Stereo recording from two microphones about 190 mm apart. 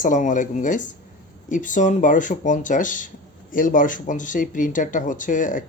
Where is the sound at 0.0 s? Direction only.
40° left (ahead or behind).